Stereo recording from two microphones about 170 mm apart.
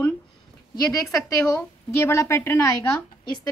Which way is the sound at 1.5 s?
15° left (ahead or behind).